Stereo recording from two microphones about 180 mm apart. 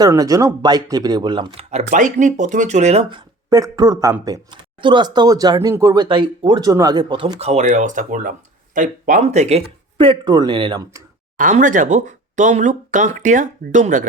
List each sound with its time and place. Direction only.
0.0 s speech: 20° right (ahead or behind)
11.3 s speech: 45° right (ahead or behind)